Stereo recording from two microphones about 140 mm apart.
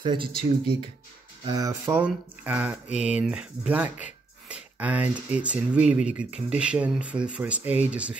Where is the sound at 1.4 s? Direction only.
25° right (ahead or behind).